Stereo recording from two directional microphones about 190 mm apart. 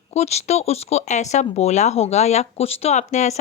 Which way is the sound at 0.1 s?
35° left (ahead or behind).